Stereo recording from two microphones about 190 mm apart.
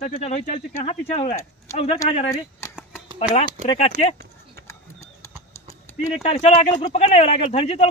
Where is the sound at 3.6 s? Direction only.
35° left (ahead or behind).